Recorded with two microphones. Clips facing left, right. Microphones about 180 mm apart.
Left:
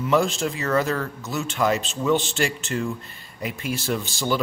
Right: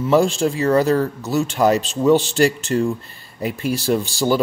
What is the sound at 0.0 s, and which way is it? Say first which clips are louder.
Speech: right 5 dB; 35° right (ahead or behind).